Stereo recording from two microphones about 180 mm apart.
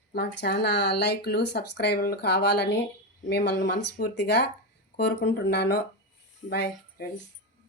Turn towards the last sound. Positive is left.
turn(degrees=70)  # may be behind; listen again after turning